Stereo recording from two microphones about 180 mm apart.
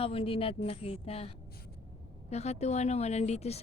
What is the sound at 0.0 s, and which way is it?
Speech, 30° left (ahead or behind).